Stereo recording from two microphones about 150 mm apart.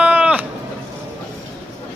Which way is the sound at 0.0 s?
10° right (ahead or behind).